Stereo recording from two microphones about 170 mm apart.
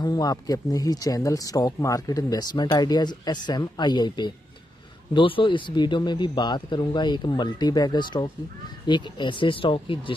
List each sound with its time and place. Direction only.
0.0 s speech: 20° left (ahead or behind)